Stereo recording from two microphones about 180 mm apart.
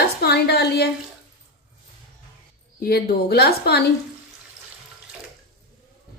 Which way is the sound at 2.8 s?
60° left (ahead or behind).